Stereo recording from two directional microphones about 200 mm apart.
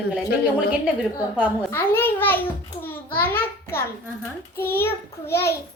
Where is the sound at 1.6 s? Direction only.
10° left (ahead or behind).